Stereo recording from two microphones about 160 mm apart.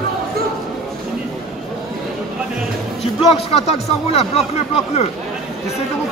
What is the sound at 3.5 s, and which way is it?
Speech, 40° left (ahead or behind).